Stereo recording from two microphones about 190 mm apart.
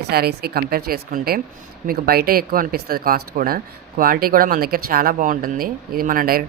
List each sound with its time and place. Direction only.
0.1 s speech: 55° right (ahead or behind)